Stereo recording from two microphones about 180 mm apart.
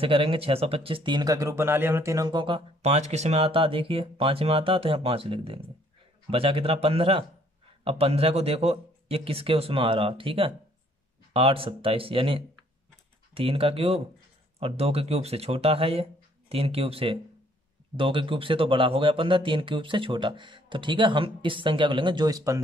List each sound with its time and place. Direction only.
0.0 s speech: 30° right (ahead or behind)